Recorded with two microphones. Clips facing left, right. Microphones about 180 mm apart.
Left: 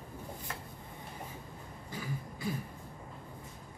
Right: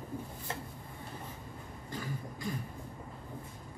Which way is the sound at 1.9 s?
10° left (ahead or behind).